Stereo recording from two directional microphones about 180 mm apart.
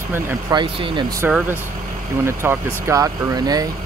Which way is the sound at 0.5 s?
25° right (ahead or behind).